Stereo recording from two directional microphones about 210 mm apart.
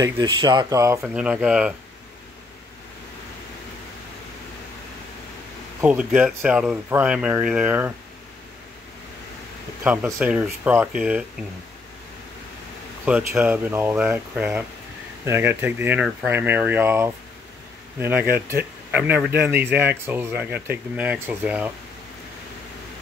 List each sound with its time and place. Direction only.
0.0 s speech: 20° right (ahead or behind); by 1.7 s 5° right (ahead or behind)
5.8 s speech: 5° right (ahead or behind)
10.1 s speech: 5° right (ahead or behind)
13.0 s speech: 5° right (ahead or behind)